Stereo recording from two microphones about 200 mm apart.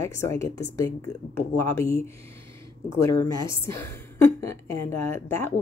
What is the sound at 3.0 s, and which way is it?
Speech, 15° left (ahead or behind).